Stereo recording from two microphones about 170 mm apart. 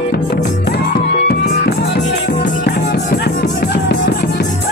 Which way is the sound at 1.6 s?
85° left.